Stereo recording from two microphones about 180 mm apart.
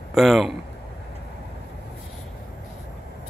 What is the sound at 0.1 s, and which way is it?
Speech, centre (ahead or behind).